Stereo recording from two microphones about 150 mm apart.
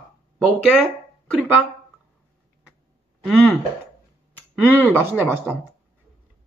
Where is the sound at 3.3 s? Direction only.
5° left (ahead or behind).